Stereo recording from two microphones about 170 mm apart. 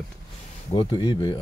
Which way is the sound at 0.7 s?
30° left (ahead or behind).